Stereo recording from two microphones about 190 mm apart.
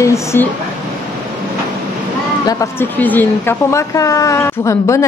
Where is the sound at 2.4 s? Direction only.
15° left (ahead or behind).